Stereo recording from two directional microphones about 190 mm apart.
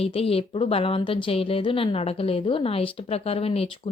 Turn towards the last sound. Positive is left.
turn(degrees=30)  # may be behind; listen again after turning